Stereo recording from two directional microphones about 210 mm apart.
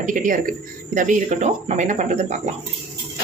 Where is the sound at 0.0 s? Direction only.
40° right (ahead or behind).